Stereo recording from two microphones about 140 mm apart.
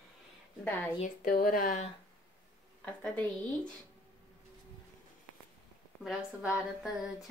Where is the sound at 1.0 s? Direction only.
85° left.